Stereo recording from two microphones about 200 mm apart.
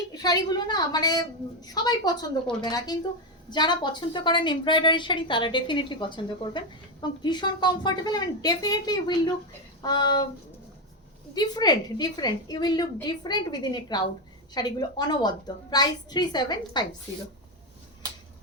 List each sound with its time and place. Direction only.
0.1 s a woman's voice: 20° left (ahead or behind)
11.3 s a woman's voice: 20° left (ahead or behind)